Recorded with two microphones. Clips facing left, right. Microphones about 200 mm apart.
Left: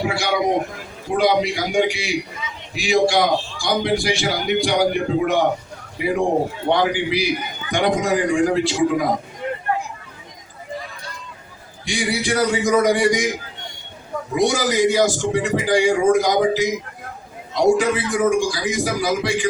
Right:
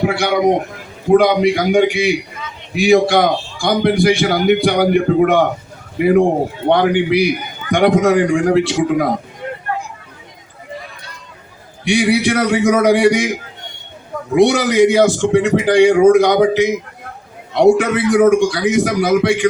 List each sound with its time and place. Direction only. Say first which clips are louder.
0.0 s a man's voice: right 6 dB; 55° right (ahead or behind)
11.9 s a man's voice: right 8 dB; 65° right (ahead or behind)
14.3 s a man's voice: right 7 dB; 65° right (ahead or behind)